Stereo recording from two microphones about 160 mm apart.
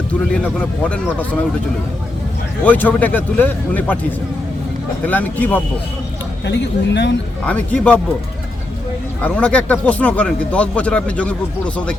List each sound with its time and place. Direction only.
0.4 s speech: 10° left (ahead or behind)
2.6 s speech: 10° left (ahead or behind)
5.0 s speech: 10° left (ahead or behind)
6.4 s speech: 90° left
7.4 s speech: 10° left (ahead or behind)
9.2 s speech: 10° left (ahead or behind)